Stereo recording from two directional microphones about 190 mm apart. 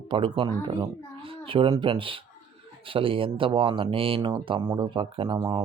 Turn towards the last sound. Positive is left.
turn(degrees=-20)  # may be behind; listen again after turning